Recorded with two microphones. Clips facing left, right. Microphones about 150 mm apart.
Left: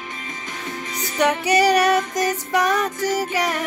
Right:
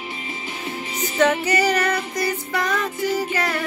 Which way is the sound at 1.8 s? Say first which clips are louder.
Left 5 dB; 90° left.